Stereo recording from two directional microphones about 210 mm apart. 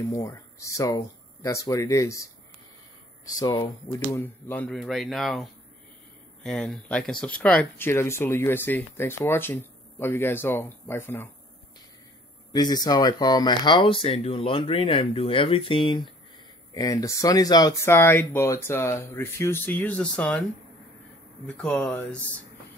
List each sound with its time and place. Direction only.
0.1 s speech: 15° left (ahead or behind)
3.3 s speech: 20° left (ahead or behind)
12.5 s speech: 20° left (ahead or behind)
21.5 s speech: 5° left (ahead or behind)